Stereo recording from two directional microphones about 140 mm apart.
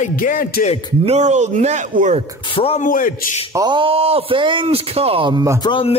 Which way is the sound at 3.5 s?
30° right (ahead or behind).